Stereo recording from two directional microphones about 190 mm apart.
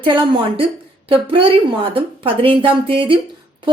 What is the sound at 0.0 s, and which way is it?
Speech, 25° right (ahead or behind).